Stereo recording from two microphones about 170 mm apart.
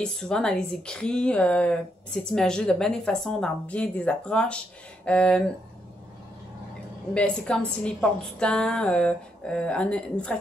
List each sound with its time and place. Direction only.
0.0 s speech: 5° left (ahead or behind)
7.2 s speech: 5° left (ahead or behind)